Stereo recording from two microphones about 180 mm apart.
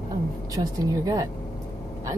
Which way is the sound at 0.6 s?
20° right (ahead or behind).